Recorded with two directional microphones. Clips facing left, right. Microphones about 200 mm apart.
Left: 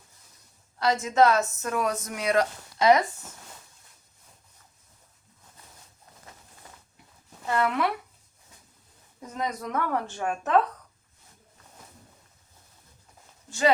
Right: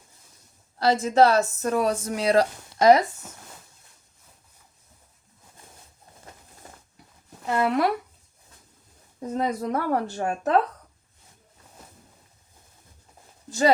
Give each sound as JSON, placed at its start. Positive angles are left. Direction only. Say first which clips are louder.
{"t": 0.8, "sound": "speech", "louder": "right 3 dB", "side_deg": -35}
{"t": 7.6, "sound": "speech", "louder": "right 4 dB", "side_deg": -40}
{"t": 9.2, "sound": "speech", "louder": "right 6 dB", "side_deg": -30}